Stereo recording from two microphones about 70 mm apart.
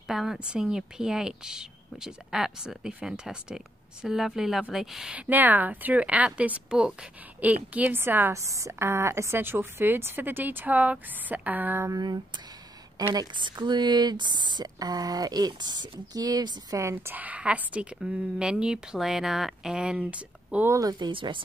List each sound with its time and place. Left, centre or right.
0.1 s a woman's voice: centre
5.1 s speech: right
8.3 s a woman's voice: right
13.1 s speech: right
16.9 s a woman's voice: right
21.0 s speech: right